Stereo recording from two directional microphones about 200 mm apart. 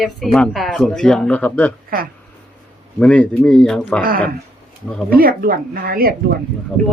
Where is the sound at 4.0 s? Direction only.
45° right (ahead or behind).